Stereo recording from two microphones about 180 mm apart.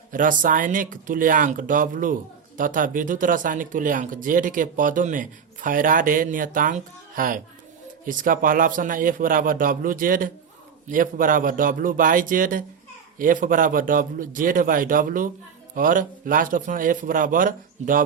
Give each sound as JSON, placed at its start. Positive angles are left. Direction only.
{"t": 0.1, "sound": "speech", "side_deg": -45}